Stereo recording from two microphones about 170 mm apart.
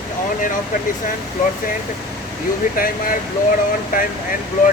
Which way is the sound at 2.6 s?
55° left (ahead or behind).